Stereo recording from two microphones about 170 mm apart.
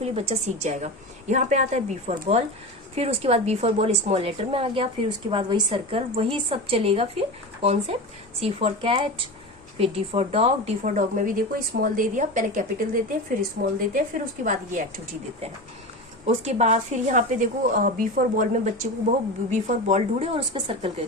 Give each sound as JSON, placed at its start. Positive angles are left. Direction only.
{"t": 0.0, "sound": "a woman's voice", "side_deg": -35}
{"t": 16.2, "sound": "a woman's voice", "side_deg": -40}